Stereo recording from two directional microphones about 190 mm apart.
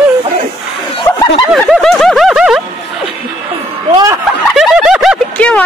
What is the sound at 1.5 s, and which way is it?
Speech, centre (ahead or behind).